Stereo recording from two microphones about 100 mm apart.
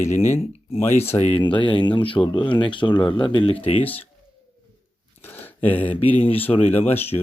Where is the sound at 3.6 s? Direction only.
90° left.